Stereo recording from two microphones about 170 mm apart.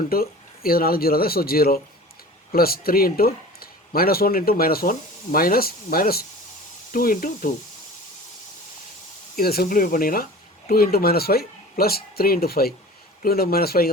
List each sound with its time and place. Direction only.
0.1 s speech: 60° left (ahead or behind)
9.3 s speech: 60° left (ahead or behind)